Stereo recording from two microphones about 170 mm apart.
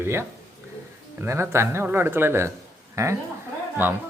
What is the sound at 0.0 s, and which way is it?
Speech, 15° right (ahead or behind).